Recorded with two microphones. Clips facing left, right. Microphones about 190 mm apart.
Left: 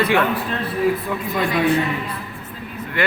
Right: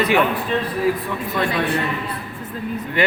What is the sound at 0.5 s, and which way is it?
Speech, 5° left (ahead or behind).